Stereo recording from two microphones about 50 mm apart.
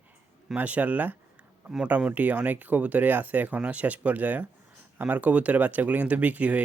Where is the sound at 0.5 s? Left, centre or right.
Right.